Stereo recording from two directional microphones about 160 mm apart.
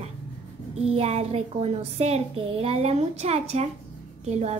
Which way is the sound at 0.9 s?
40° right (ahead or behind).